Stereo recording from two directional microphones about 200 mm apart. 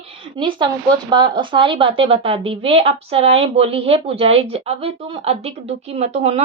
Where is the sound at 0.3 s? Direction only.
25° right (ahead or behind).